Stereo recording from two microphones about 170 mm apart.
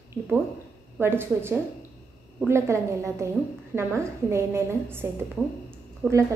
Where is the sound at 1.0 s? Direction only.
15° right (ahead or behind).